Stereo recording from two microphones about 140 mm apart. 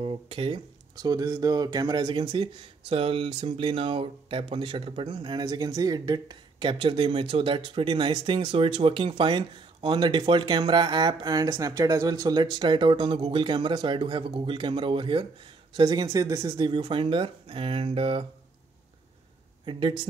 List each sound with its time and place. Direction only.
0.0 s speech: 40° right (ahead or behind)
0.9 s speech: 25° right (ahead or behind)
19.6 s speech: 35° right (ahead or behind)